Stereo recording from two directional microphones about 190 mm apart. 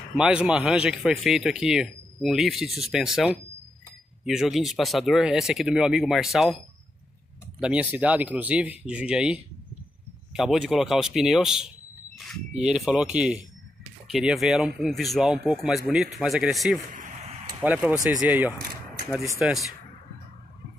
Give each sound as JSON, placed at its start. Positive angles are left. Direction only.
{"t": 0.2, "sound": "speech", "side_deg": -5}
{"t": 7.6, "sound": "speech", "side_deg": -5}
{"t": 16.9, "sound": "a sound", "side_deg": -45}
{"t": 17.6, "sound": "speech", "side_deg": -10}